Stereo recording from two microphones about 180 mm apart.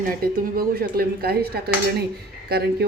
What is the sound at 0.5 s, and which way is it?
A woman's voice, 55° right (ahead or behind).